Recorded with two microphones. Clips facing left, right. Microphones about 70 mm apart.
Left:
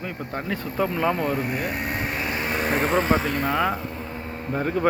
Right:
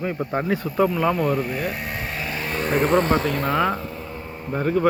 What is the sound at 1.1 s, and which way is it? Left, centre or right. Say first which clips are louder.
Speech: right 3 dB; left.